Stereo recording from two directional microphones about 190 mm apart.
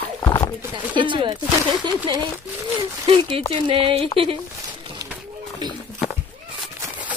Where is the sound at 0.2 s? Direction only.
20° left (ahead or behind).